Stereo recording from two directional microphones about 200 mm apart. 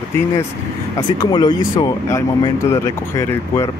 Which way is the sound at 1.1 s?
20° left (ahead or behind).